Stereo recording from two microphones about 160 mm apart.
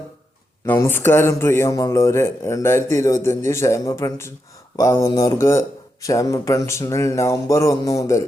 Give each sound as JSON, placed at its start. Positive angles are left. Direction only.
{"t": 0.6, "sound": "a man's voice", "side_deg": 15}